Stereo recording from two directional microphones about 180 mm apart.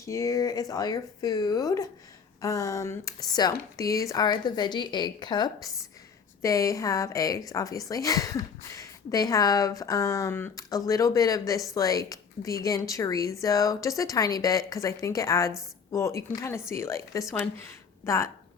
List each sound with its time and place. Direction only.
0.0 s a woman's voice: 15° left (ahead or behind)